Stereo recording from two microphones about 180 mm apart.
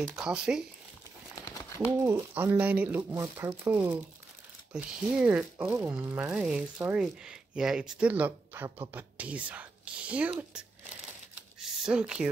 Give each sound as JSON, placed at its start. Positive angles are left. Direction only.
{"t": 0.0, "sound": "speech", "side_deg": -5}
{"t": 1.3, "sound": "crumpling", "side_deg": 20}
{"t": 2.0, "sound": "speech", "side_deg": -15}
{"t": 11.6, "sound": "a sound", "side_deg": -5}